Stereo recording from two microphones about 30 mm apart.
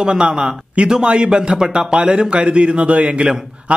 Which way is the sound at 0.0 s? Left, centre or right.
Right.